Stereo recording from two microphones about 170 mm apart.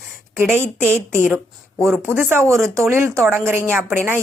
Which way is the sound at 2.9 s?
15° right (ahead or behind).